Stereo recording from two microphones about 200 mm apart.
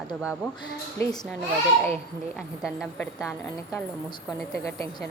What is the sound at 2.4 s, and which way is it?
Speech, centre (ahead or behind).